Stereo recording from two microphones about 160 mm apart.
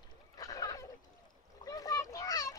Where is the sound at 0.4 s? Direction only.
20° left (ahead or behind).